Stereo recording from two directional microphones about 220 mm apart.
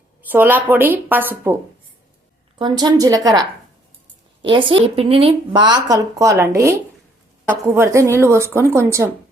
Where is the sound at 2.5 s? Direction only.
20° right (ahead or behind).